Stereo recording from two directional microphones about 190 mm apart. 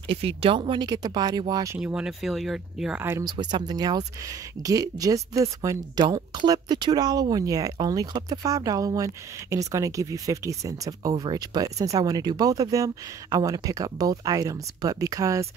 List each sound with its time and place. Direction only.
0.4 s a woman's voice: 25° right (ahead or behind)
1.8 s a woman's voice: 5° right (ahead or behind)